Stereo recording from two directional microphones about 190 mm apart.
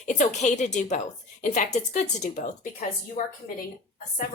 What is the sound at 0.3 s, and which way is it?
A woman's voice, 40° left (ahead or behind).